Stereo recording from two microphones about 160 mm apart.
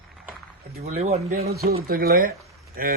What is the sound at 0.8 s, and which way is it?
Speech, 40° right (ahead or behind).